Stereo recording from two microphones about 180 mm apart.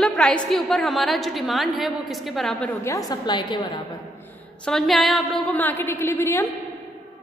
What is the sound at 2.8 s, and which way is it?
Speech, 20° left (ahead or behind).